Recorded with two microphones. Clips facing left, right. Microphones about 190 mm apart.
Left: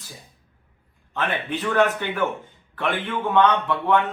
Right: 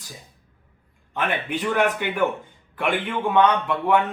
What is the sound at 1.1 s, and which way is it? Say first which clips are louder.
A man's voice: right 1 dB; 15° right (ahead or behind).